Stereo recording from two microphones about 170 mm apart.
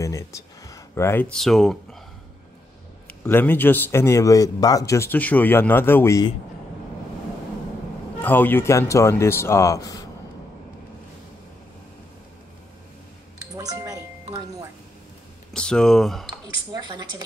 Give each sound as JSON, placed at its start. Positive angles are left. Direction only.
{"t": 0.0, "sound": "a sound", "side_deg": 20}
{"t": 1.3, "sound": "speech", "side_deg": 0}
{"t": 3.1, "sound": "a man's voice", "side_deg": 10}
{"t": 8.2, "sound": "a man's voice", "side_deg": 10}
{"t": 13.6, "sound": "doorbell", "side_deg": -20}
{"t": 15.5, "sound": "speech", "side_deg": 5}